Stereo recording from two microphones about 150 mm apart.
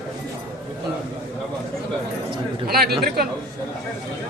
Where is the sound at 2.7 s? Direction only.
90° right.